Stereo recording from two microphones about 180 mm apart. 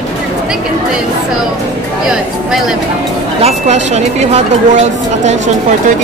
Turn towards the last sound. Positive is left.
turn(degrees=-40)  # may be behind; listen again after turning